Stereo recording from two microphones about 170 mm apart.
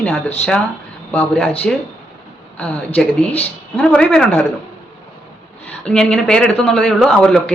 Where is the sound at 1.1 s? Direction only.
5° left (ahead or behind).